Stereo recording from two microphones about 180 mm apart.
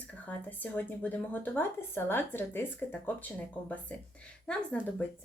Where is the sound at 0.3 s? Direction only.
10° left (ahead or behind).